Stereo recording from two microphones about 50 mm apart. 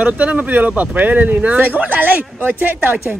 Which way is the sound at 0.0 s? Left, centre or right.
Right.